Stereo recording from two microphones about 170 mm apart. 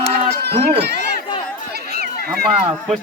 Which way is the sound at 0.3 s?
75° right (ahead or behind).